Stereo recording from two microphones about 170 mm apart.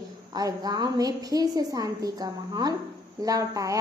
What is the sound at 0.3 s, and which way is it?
A woman's voice, 20° right (ahead or behind).